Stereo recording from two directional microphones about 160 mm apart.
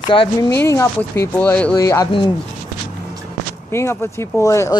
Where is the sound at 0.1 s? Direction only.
35° left (ahead or behind).